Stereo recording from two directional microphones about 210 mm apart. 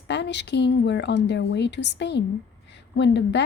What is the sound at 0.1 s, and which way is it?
A woman's voice, 55° left (ahead or behind).